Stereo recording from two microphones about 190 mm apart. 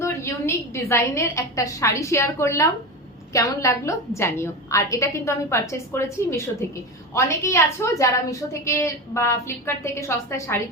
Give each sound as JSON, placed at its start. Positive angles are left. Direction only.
{"t": 0.0, "sound": "a woman's voice", "side_deg": 15}